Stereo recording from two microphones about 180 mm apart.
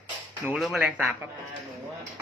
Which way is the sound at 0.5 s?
Centre (ahead or behind).